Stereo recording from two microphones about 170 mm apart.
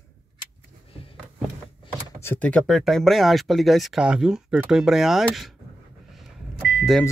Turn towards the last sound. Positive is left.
turn(degrees=0)  # may be behind; listen again after turning